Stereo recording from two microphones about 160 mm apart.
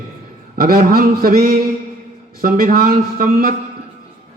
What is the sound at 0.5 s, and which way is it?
A man's voice, 70° right (ahead or behind).